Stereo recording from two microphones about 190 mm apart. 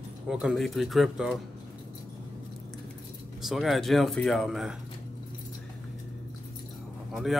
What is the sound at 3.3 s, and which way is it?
A man's voice, centre (ahead or behind).